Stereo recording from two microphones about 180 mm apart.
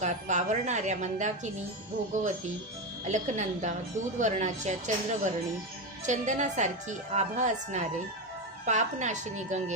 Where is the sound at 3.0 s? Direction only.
40° right (ahead or behind).